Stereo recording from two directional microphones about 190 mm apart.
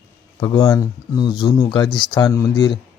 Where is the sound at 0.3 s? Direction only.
20° left (ahead or behind).